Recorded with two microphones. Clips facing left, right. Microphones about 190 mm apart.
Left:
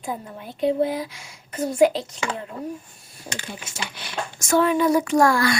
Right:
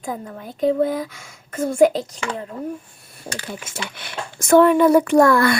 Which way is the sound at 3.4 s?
55° right (ahead or behind).